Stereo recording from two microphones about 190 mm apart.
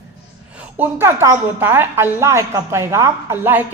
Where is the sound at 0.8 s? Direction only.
10° right (ahead or behind).